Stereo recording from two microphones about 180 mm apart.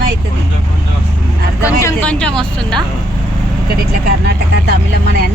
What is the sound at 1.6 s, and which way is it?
Speech, 15° left (ahead or behind).